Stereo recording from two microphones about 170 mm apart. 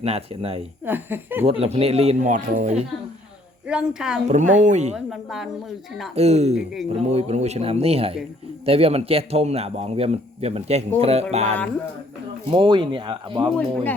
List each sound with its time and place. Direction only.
0.0 s speech: 35° right (ahead or behind)
0.9 s speech: 10° right (ahead or behind)
1.5 s speech: 35° right (ahead or behind)
3.7 s a woman's voice: 5° right (ahead or behind)
4.3 s speech: 45° right (ahead or behind)
4.9 s a woman's voice: centre (ahead or behind)
6.1 s speech: 40° right (ahead or behind)